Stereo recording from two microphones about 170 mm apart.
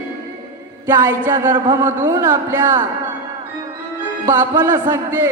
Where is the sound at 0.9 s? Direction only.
15° right (ahead or behind).